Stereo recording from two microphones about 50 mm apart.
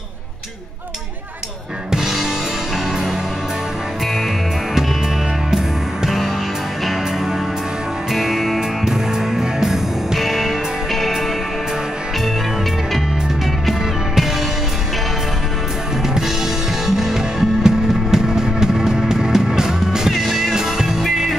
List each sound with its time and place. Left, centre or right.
1.9 s music: centre
6.0 s music: centre
8.1 s music: centre
16.8 s music: centre